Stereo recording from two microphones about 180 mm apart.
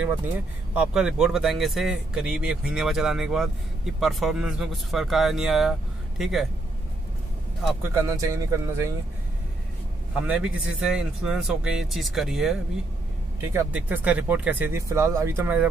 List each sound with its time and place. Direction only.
0.7 s a man's voice: 5° right (ahead or behind)
7.9 s speech: 15° right (ahead or behind)
10.1 s a man's voice: 5° right (ahead or behind)